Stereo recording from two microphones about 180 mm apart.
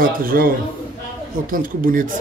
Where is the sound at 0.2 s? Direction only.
55° right (ahead or behind).